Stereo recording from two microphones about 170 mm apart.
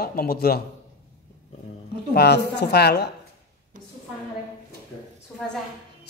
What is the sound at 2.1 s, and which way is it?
Speech, 75° left (ahead or behind).